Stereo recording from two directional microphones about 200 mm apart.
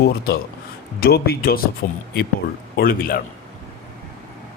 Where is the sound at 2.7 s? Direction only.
50° left (ahead or behind).